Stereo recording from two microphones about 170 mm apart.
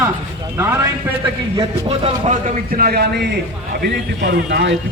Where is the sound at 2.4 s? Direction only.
55° right (ahead or behind).